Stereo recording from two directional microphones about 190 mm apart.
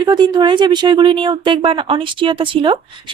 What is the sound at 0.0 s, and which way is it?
Speech, 20° right (ahead or behind).